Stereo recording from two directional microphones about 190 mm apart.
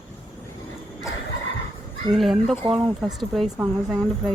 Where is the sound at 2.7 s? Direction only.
20° right (ahead or behind).